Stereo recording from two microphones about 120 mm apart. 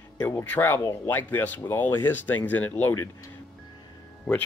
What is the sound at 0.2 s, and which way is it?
Speech, 20° left (ahead or behind).